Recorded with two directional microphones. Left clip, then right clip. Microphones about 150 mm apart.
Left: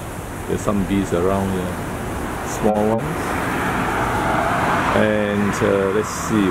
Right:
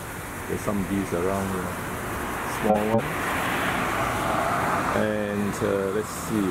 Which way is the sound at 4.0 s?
5° right (ahead or behind).